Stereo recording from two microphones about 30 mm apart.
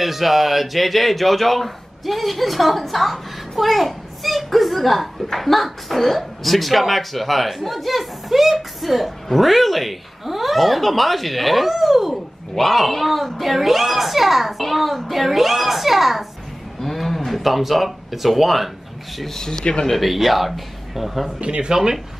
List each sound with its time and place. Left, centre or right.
0.0 s speech: centre
16.8 s speech: centre
19.3 s speech: centre
19.6 s speech: left
19.9 s speech: centre
21.4 s speech: right